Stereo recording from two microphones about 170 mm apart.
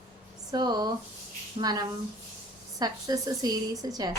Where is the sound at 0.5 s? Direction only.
25° right (ahead or behind).